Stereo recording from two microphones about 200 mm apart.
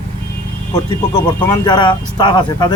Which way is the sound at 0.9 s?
20° left (ahead or behind).